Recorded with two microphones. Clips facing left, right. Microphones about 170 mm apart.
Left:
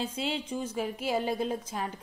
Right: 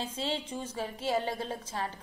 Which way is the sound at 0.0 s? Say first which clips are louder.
Left 2 dB; 10° left (ahead or behind).